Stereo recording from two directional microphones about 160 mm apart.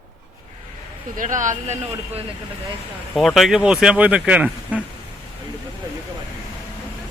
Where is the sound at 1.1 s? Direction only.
55° right (ahead or behind).